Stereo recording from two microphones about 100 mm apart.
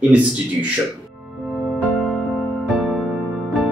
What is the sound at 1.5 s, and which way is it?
Music, 5° left (ahead or behind).